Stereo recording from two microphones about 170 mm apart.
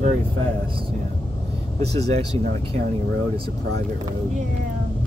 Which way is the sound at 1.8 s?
40° right (ahead or behind).